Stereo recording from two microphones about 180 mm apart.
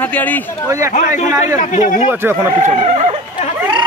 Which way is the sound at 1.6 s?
45° left (ahead or behind).